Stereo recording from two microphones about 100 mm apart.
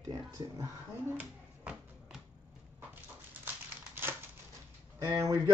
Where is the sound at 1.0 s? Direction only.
15° right (ahead or behind).